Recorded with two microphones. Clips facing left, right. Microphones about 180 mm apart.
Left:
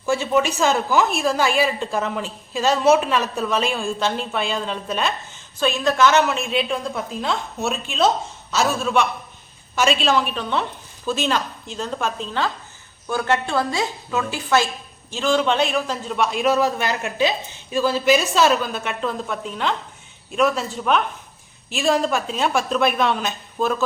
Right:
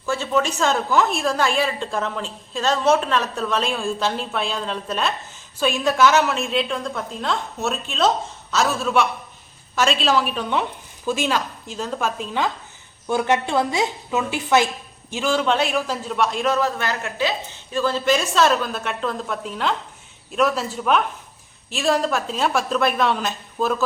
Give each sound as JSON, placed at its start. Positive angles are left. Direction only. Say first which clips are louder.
{"t": 0.0, "sound": "a woman's voice", "louder": "left 2 dB", "side_deg": 10}
{"t": 15.1, "sound": "a woman's voice", "louder": "left 1 dB", "side_deg": -5}